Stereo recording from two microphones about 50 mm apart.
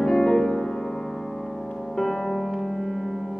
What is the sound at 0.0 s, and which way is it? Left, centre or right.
Music, centre.